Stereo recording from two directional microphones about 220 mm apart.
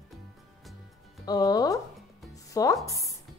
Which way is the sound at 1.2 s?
15° left (ahead or behind).